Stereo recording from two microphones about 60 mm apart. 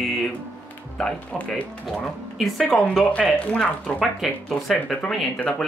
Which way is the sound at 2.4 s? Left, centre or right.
Centre.